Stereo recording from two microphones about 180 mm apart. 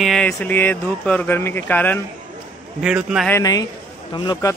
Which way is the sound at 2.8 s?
5° right (ahead or behind).